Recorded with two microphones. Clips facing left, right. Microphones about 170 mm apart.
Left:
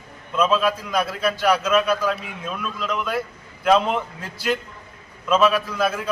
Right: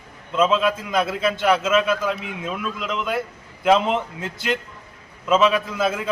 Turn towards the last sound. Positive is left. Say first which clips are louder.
# even
turn(degrees=-20)  # may be behind; listen again after turning